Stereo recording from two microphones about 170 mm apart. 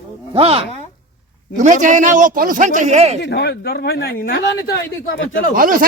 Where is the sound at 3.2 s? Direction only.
80° left.